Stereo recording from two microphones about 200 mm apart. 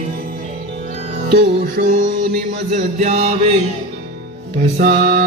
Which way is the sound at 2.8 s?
35° right (ahead or behind).